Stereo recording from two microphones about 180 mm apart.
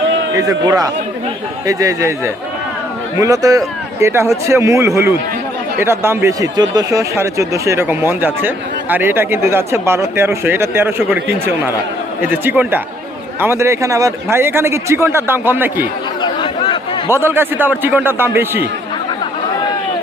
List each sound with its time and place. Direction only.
0.3 s speech: 20° right (ahead or behind)
16.2 s chatter: 25° left (ahead or behind)
17.1 s speech: 10° right (ahead or behind)